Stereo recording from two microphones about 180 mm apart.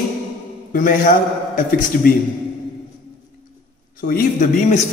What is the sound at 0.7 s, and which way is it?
Speech, 45° left (ahead or behind).